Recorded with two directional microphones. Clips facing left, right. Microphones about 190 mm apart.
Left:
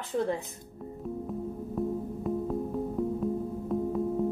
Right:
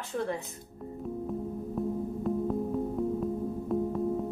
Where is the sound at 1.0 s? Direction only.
Centre (ahead or behind).